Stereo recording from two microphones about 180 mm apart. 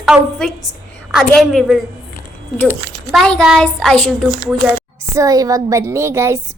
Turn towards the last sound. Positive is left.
turn(degrees=-15)  # may be behind; listen again after turning